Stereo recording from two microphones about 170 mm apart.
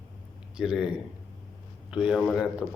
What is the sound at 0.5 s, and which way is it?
A man's voice, 5° right (ahead or behind).